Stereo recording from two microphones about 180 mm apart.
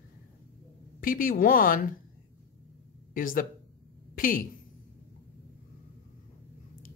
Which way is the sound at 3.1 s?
50° left (ahead or behind).